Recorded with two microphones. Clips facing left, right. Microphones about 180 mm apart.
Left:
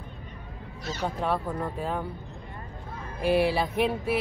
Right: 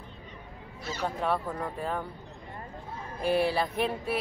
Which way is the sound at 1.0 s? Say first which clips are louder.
Left 1 dB; centre (ahead or behind).